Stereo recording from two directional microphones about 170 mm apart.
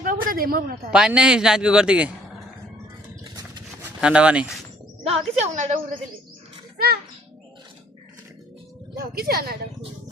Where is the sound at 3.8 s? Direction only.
5° right (ahead or behind).